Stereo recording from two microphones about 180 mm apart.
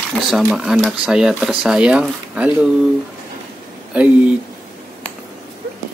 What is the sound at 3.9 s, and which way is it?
Speech, 5° right (ahead or behind).